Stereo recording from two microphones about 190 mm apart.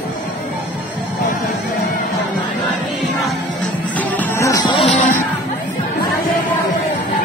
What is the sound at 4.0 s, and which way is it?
Music, 10° left (ahead or behind).